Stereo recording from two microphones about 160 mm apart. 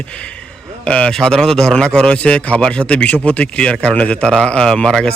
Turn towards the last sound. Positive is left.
turn(degrees=5)  # may be behind; listen again after turning